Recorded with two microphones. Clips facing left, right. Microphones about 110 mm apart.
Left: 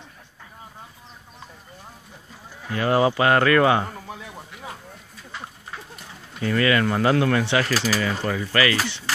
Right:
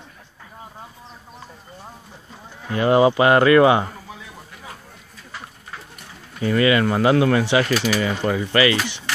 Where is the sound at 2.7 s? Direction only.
20° right (ahead or behind).